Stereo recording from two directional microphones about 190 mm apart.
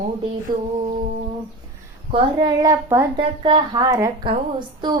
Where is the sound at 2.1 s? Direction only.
20° right (ahead or behind).